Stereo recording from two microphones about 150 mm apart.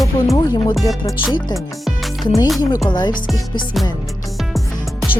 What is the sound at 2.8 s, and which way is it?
Speech, 30° left (ahead or behind).